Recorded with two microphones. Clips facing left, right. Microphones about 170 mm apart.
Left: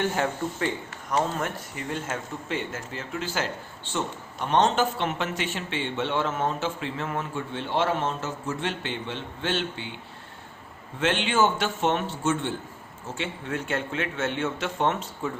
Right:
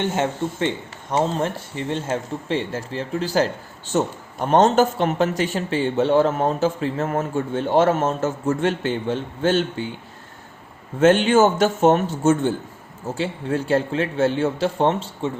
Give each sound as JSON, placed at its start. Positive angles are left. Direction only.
{"t": 0.0, "sound": "speech", "side_deg": -20}
{"t": 11.0, "sound": "a man's voice", "side_deg": -45}